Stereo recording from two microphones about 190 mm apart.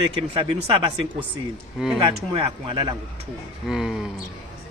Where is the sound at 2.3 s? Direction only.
25° right (ahead or behind).